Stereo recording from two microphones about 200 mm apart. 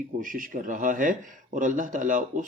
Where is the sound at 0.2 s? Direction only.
40° right (ahead or behind).